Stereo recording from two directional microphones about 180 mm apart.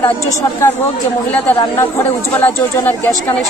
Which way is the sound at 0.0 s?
15° left (ahead or behind).